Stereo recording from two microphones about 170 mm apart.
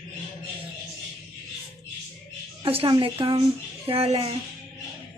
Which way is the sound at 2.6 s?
30° right (ahead or behind).